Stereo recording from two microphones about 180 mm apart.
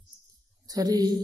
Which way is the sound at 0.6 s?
20° right (ahead or behind).